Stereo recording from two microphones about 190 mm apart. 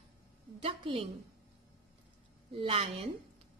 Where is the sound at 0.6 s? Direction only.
30° right (ahead or behind).